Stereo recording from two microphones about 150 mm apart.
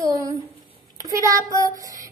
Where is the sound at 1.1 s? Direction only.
20° right (ahead or behind).